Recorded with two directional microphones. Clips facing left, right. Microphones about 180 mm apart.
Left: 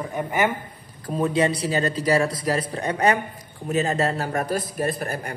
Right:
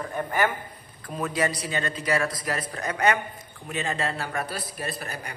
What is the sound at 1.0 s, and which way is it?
A man's voice, 30° left (ahead or behind).